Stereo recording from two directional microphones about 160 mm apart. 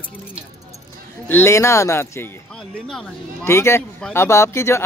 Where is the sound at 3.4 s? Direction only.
15° left (ahead or behind).